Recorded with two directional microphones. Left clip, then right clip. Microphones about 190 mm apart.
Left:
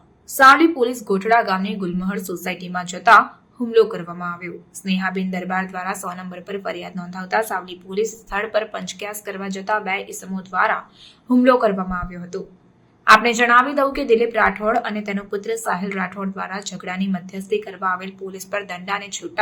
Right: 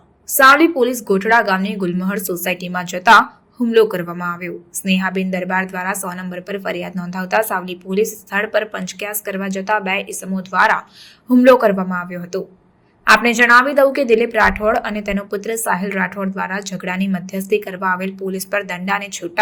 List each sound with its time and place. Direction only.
0.3 s a woman's voice: 15° right (ahead or behind)